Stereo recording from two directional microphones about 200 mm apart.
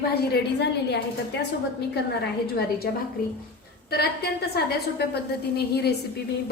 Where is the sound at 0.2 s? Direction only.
60° left (ahead or behind).